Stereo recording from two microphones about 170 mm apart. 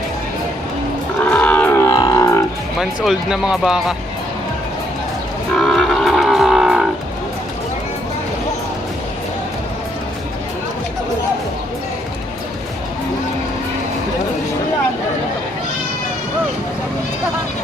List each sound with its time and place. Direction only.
1.2 s wild animals: 10° left (ahead or behind)
2.7 s speech: centre (ahead or behind)
5.5 s music: centre (ahead or behind)